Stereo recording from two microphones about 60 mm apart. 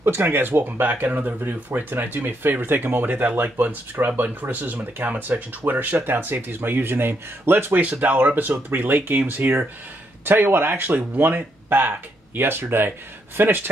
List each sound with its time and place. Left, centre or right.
0.0 s speech: right